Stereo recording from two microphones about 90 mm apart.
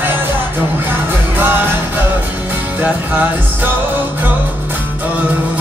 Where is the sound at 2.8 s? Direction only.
20° right (ahead or behind).